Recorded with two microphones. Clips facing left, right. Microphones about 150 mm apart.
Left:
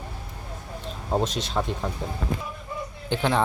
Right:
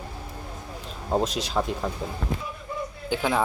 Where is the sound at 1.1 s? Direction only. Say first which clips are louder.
Right 1 dB; centre (ahead or behind).